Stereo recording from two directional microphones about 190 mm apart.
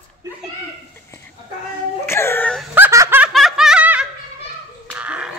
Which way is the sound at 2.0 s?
15° left (ahead or behind).